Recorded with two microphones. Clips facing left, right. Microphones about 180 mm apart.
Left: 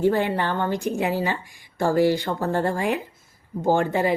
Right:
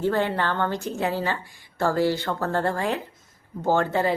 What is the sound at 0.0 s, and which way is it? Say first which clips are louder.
A woman's voice: left 2 dB; 15° left (ahead or behind).